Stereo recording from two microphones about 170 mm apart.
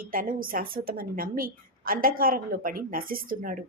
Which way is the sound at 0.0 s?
55° right (ahead or behind).